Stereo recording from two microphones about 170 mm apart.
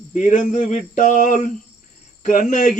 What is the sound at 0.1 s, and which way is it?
Mantra, 45° left (ahead or behind).